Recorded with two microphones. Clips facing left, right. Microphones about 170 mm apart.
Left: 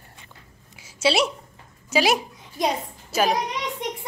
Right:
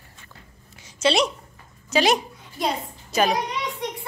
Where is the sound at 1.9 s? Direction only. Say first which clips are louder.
Right 1 dB; 5° left (ahead or behind).